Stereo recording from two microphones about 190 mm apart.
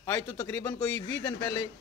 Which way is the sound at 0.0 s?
10° left (ahead or behind).